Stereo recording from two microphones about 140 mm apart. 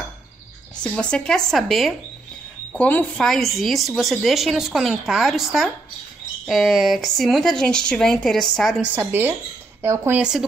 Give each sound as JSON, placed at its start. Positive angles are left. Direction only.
{"t": 0.8, "sound": "speech", "side_deg": 5}
{"t": 2.7, "sound": "a woman's voice", "side_deg": 10}
{"t": 8.9, "sound": "speech", "side_deg": -15}